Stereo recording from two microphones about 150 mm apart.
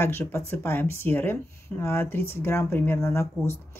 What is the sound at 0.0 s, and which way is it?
Speech, 15° left (ahead or behind).